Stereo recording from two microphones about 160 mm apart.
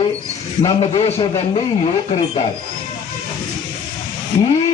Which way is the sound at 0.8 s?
35° left (ahead or behind).